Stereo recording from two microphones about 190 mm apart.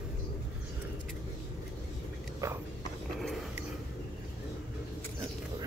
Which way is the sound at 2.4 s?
15° right (ahead or behind).